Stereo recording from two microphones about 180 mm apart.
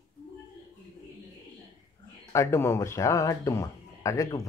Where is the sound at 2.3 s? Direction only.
15° left (ahead or behind).